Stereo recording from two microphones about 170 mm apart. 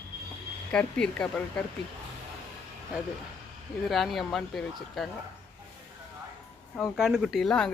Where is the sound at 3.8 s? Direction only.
Centre (ahead or behind).